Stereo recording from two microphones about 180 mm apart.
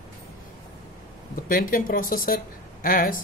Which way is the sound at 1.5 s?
50° left (ahead or behind).